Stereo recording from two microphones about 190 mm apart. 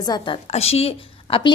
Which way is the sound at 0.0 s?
25° left (ahead or behind).